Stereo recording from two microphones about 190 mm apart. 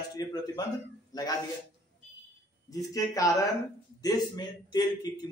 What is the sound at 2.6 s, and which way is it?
A man's voice, 20° left (ahead or behind).